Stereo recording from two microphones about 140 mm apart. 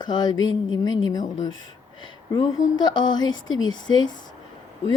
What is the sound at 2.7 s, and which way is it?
A woman's voice, 30° left (ahead or behind).